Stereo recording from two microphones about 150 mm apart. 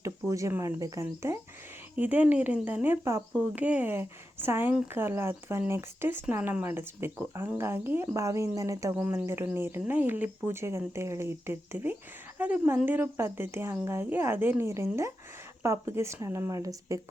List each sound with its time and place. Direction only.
0.0 s speech: 20° right (ahead or behind)